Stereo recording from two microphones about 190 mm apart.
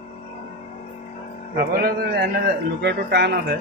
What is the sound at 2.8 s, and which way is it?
Speech, 60° right (ahead or behind).